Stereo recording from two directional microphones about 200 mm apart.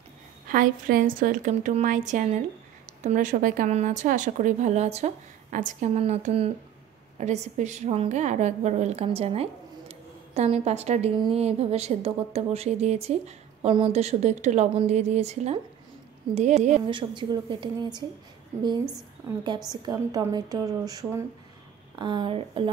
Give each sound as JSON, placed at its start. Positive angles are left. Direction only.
{"t": 0.5, "sound": "a woman's voice", "side_deg": -45}
{"t": 16.9, "sound": "a woman's voice", "side_deg": -25}
{"t": 19.7, "sound": "a woman's voice", "side_deg": -20}